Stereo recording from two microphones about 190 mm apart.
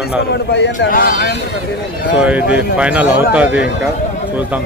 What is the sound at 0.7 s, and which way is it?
Speech, 45° left (ahead or behind).